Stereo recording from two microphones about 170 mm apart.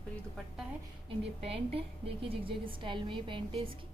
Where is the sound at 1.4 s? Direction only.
35° right (ahead or behind).